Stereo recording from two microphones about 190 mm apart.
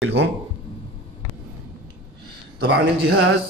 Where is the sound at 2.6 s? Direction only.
60° right (ahead or behind).